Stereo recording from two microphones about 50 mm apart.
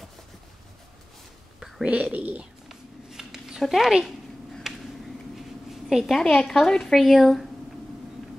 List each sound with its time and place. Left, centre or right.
1.9 s speech: right
2.1 s speech: right
2.7 s a sound: centre
6.1 s a woman's voice: centre